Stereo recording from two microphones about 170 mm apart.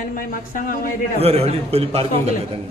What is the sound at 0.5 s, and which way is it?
Speech, 55° left (ahead or behind).